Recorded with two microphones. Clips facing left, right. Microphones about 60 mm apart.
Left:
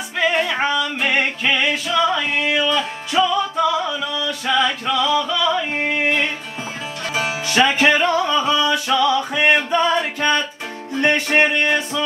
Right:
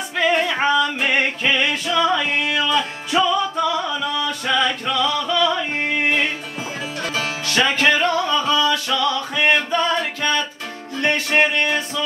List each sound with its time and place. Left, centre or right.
0.2 s music: centre
7.2 s music: centre